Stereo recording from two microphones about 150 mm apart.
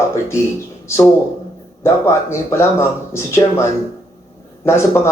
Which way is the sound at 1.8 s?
20° left (ahead or behind).